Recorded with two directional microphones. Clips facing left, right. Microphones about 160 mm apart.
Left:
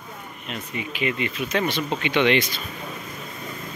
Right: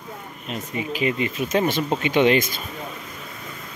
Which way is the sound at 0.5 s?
35° right (ahead or behind).